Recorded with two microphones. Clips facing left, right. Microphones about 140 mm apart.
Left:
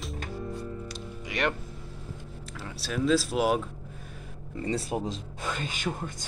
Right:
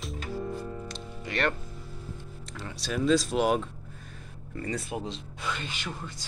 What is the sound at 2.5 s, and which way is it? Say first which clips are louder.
Speech: right 1 dB; 5° left (ahead or behind).